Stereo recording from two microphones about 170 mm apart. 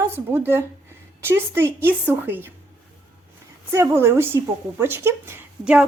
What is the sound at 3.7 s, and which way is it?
Speech, 15° right (ahead or behind).